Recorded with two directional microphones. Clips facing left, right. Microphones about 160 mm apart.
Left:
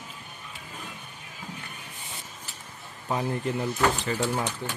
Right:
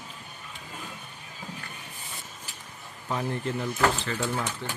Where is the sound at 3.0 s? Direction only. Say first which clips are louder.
Left 2 dB; 20° left (ahead or behind).